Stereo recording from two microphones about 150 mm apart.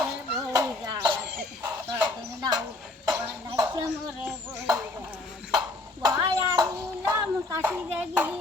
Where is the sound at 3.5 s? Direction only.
25° right (ahead or behind).